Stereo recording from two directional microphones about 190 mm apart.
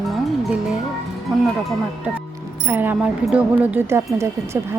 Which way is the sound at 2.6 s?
10° right (ahead or behind).